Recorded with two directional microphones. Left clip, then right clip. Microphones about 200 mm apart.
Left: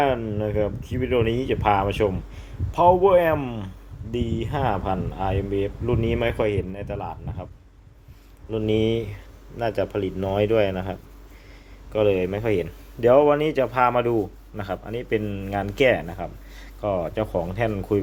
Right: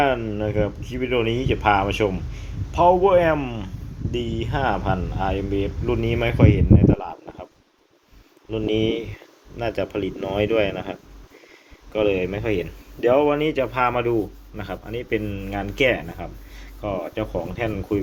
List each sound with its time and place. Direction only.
0.0 s speech: 10° left (ahead or behind)
8.4 s speech: 20° left (ahead or behind)
11.9 s speech: 15° left (ahead or behind)